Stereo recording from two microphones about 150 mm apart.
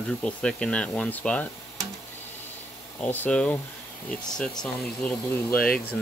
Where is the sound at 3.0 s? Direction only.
10° left (ahead or behind).